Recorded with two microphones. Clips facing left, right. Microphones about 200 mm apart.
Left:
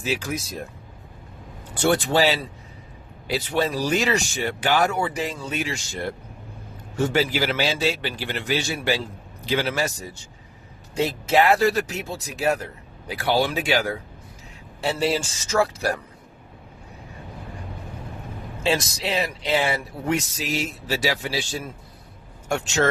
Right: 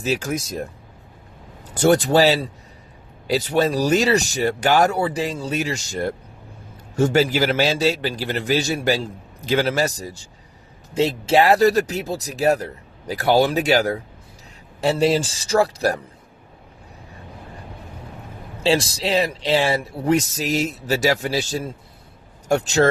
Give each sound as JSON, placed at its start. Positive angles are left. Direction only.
{"t": 0.0, "sound": "speech", "side_deg": -40}
{"t": 1.7, "sound": "speech", "side_deg": -40}
{"t": 10.9, "sound": "speech", "side_deg": -25}
{"t": 18.6, "sound": "speech", "side_deg": -30}